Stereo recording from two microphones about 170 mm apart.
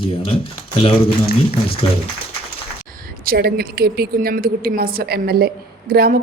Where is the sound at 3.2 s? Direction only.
65° right (ahead or behind).